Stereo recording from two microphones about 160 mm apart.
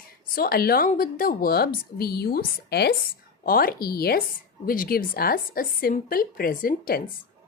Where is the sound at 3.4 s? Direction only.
65° left (ahead or behind).